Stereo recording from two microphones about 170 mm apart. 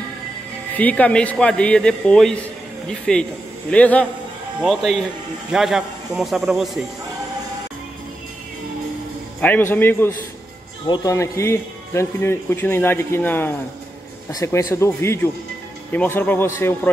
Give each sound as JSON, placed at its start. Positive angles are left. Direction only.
{"t": 0.7, "sound": "a man's voice", "side_deg": 10}
{"t": 9.4, "sound": "a man's voice", "side_deg": 10}